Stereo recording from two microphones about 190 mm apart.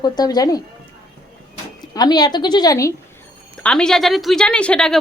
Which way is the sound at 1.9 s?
20° left (ahead or behind).